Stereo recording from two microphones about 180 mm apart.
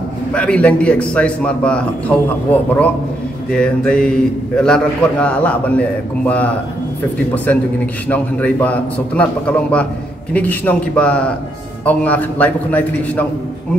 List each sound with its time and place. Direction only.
0.3 s a man's voice: 5° left (ahead or behind)
8.1 s a man's voice: 10° left (ahead or behind)